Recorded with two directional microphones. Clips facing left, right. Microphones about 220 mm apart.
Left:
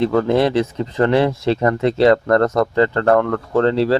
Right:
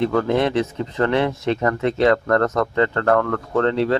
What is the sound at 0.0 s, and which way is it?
Speech, 30° left (ahead or behind).